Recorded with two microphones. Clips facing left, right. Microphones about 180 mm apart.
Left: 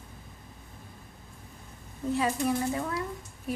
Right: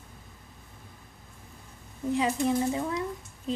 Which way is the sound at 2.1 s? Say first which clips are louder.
Right 1 dB; 20° right (ahead or behind).